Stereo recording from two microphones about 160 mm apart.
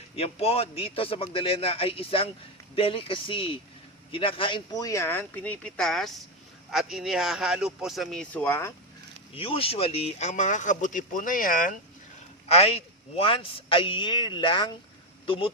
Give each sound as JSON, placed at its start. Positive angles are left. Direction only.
{"t": 0.2, "sound": "a man's voice", "side_deg": 40}
{"t": 9.3, "sound": "speech", "side_deg": 35}
{"t": 12.5, "sound": "a man's voice", "side_deg": 40}